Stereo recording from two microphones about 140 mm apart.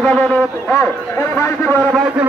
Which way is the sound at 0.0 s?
10° left (ahead or behind).